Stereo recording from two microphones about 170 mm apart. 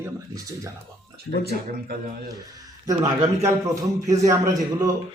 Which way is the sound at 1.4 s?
60° right (ahead or behind).